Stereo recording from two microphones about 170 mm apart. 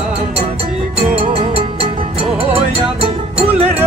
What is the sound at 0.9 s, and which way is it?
Music, 35° right (ahead or behind).